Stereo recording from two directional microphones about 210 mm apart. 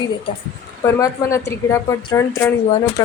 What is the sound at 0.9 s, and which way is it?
A woman's voice, 15° left (ahead or behind).